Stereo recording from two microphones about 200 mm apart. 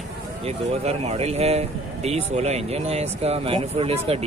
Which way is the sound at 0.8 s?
30° right (ahead or behind).